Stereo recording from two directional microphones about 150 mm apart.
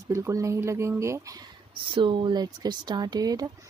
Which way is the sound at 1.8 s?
35° right (ahead or behind).